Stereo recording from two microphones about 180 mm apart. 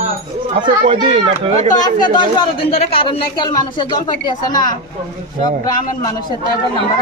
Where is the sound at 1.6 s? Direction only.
20° left (ahead or behind).